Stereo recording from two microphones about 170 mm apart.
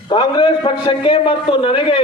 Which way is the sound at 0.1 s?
25° left (ahead or behind).